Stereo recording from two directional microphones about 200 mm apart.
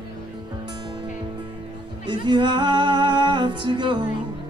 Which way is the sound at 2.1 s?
25° right (ahead or behind).